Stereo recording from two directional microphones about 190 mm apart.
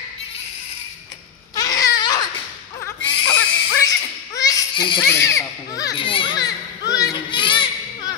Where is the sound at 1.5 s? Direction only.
20° left (ahead or behind).